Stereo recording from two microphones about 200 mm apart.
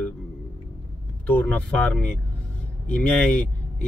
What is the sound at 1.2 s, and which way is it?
Speech, 5° left (ahead or behind).